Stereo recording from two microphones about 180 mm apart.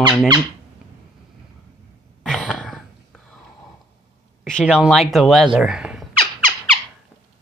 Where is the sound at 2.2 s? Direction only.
5° left (ahead or behind).